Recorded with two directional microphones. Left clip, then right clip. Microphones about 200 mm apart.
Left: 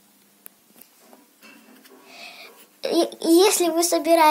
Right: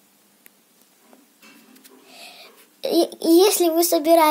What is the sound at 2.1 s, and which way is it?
A child's voice, 10° right (ahead or behind).